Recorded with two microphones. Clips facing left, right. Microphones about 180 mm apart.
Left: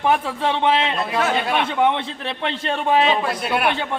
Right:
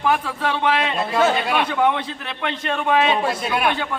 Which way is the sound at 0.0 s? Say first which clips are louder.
Left 1 dB; 25° left (ahead or behind).